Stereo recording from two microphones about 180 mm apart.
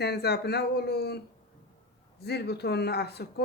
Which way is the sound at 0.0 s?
65° left (ahead or behind).